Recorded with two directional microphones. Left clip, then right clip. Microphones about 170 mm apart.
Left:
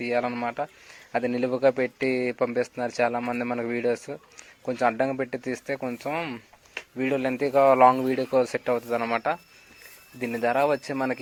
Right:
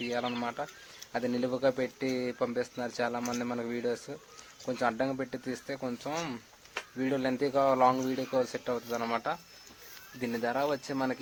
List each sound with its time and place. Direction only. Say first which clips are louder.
0.0 s speech: left 7 dB; 25° left (ahead or behind)
9.0 s speech: left 6 dB; 15° left (ahead or behind)